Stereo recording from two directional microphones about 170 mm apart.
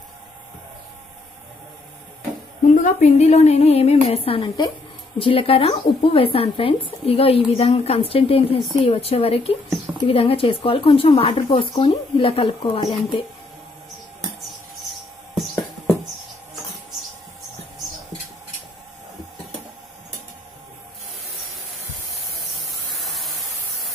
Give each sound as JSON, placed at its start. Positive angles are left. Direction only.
{"t": 2.7, "sound": "speech", "side_deg": 45}
{"t": 22.9, "sound": "spray", "side_deg": 0}